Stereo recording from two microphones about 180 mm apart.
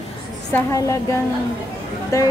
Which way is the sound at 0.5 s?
15° left (ahead or behind).